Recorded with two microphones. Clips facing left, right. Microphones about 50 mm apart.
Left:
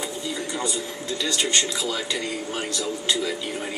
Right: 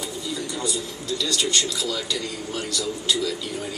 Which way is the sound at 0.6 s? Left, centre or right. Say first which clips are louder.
Even; left.